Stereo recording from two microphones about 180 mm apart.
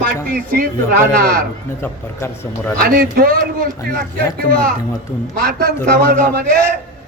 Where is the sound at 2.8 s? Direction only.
55° right (ahead or behind).